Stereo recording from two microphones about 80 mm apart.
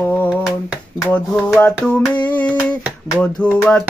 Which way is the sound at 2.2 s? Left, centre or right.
Centre.